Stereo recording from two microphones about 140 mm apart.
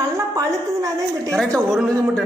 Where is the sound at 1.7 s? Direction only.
Centre (ahead or behind).